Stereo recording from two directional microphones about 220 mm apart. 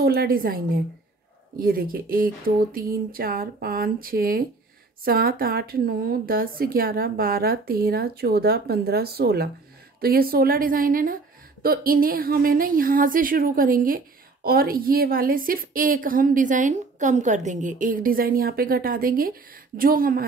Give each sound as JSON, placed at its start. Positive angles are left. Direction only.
{"t": 0.0, "sound": "a woman's voice", "side_deg": -45}